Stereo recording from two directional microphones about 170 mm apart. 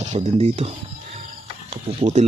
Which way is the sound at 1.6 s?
35° right (ahead or behind).